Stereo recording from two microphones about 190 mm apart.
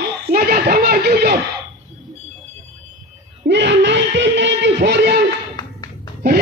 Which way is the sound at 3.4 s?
65° right (ahead or behind).